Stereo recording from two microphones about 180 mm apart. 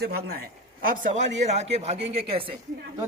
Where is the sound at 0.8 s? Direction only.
50° right (ahead or behind); by 2.5 s 30° right (ahead or behind).